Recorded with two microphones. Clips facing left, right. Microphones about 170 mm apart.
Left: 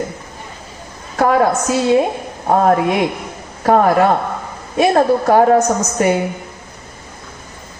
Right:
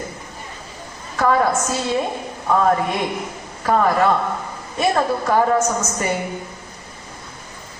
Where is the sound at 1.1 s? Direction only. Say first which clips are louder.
Left 4 dB; 45° left (ahead or behind).